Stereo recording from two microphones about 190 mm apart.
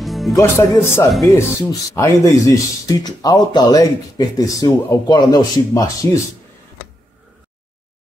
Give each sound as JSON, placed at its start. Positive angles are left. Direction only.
{"t": 0.0, "sound": "music", "side_deg": 0}
{"t": 0.3, "sound": "speech", "side_deg": 15}